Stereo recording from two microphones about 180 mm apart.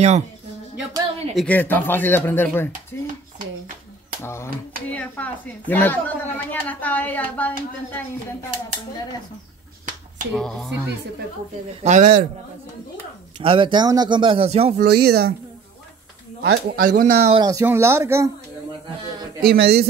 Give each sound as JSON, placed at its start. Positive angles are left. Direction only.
{"t": 1.3, "sound": "speech", "side_deg": 5}
{"t": 2.9, "sound": "dishes", "side_deg": 15}
{"t": 4.2, "sound": "speech", "side_deg": 15}
{"t": 10.3, "sound": "speech", "side_deg": 0}
{"t": 11.8, "sound": "speech", "side_deg": -45}
{"t": 13.4, "sound": "speech", "side_deg": -30}
{"t": 14.8, "sound": "speech", "side_deg": -60}
{"t": 16.4, "sound": "speech", "side_deg": -55}
{"t": 17.4, "sound": "speech", "side_deg": -20}
{"t": 19.4, "sound": "speech", "side_deg": -60}